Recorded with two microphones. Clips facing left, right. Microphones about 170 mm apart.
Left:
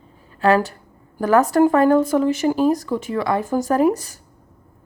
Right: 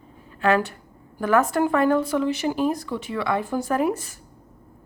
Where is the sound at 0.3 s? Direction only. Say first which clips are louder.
Left 4 dB; 35° left (ahead or behind).